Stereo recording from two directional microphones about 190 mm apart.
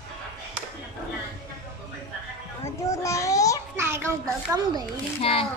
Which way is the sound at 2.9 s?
15° left (ahead or behind).